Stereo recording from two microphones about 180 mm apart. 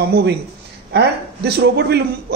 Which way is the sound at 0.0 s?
65° right (ahead or behind).